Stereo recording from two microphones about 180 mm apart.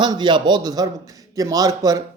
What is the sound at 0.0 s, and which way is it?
Speech, 25° right (ahead or behind).